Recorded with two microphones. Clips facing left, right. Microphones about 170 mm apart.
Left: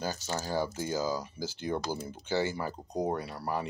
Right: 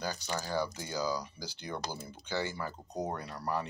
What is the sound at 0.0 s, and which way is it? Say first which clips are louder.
Speech: left 2 dB; 40° left (ahead or behind).